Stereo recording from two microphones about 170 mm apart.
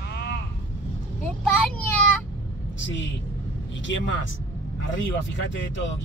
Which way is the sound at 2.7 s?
90° left.